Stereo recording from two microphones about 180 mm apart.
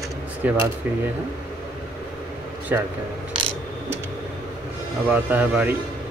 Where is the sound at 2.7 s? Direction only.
10° right (ahead or behind).